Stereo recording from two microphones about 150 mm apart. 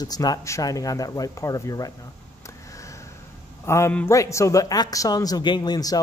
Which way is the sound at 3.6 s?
20° left (ahead or behind).